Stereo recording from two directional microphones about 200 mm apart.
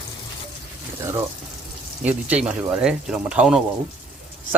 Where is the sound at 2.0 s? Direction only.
5° right (ahead or behind).